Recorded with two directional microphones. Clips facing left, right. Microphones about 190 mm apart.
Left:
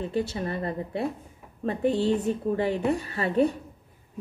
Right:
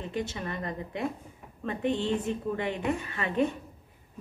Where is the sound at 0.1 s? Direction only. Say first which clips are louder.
Left 5 dB; 35° left (ahead or behind).